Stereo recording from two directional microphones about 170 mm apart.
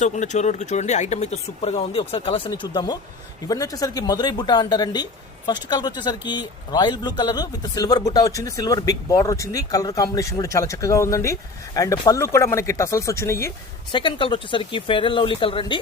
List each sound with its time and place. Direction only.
0.0 s a man's voice: 45° left (ahead or behind); by 13.5 s 15° left (ahead or behind)
13.9 s a man's voice: 30° left (ahead or behind)